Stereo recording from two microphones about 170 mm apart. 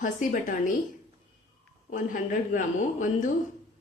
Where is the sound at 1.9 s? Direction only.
50° left (ahead or behind).